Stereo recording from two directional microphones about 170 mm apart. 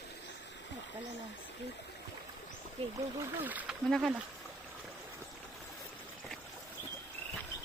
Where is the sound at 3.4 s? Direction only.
10° right (ahead or behind).